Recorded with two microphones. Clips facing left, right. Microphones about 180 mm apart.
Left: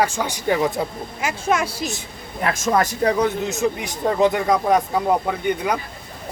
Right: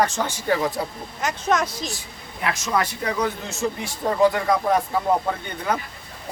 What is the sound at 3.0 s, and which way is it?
Speech, 35° left (ahead or behind).